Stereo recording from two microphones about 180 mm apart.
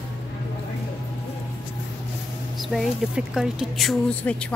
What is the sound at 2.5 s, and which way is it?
A woman's voice, centre (ahead or behind).